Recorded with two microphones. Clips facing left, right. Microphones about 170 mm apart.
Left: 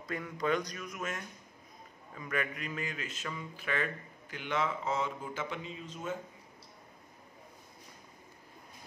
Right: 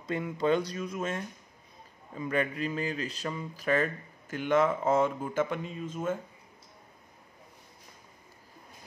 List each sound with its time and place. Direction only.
0.0 s speech: 25° right (ahead or behind); by 6.1 s 50° right (ahead or behind)